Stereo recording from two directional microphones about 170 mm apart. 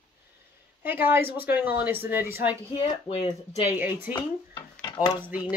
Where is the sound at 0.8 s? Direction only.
10° right (ahead or behind).